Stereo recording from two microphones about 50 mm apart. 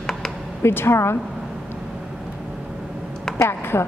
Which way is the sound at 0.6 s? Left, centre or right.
Left.